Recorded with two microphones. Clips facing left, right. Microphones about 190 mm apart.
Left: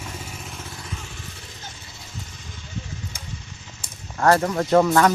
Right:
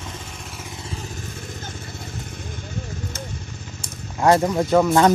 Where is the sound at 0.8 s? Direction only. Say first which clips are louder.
Right 4 dB; 35° right (ahead or behind).